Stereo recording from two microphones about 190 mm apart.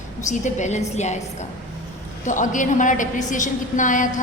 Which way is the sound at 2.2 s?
40° left (ahead or behind).